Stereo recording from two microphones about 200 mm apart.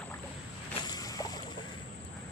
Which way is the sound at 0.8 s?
20° left (ahead or behind).